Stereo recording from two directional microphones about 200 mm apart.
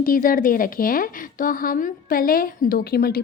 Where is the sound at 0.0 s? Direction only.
45° left (ahead or behind).